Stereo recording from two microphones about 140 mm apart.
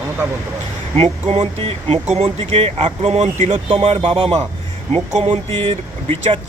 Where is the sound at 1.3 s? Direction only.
45° right (ahead or behind).